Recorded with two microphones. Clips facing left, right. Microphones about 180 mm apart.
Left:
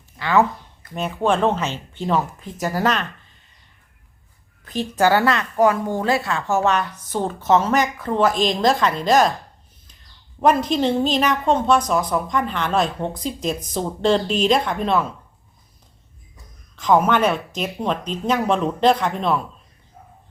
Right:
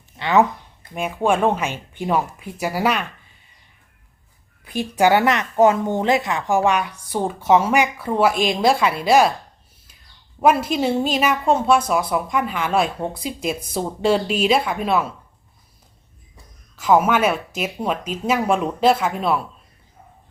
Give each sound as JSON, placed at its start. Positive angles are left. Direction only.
{"t": 0.2, "sound": "a sound", "side_deg": -20}
{"t": 0.9, "sound": "a woman's voice", "side_deg": -10}
{"t": 4.6, "sound": "a woman's voice", "side_deg": -10}
{"t": 10.4, "sound": "a woman's voice", "side_deg": -10}
{"t": 16.7, "sound": "a woman's voice", "side_deg": -10}